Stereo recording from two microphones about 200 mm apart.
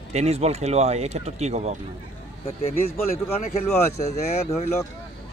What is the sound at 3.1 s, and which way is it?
Speech, 50° left (ahead or behind).